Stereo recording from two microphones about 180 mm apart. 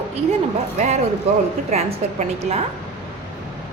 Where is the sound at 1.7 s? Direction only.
35° right (ahead or behind).